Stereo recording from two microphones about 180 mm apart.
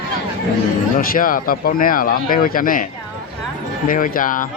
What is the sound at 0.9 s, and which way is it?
Speech, 50° left (ahead or behind).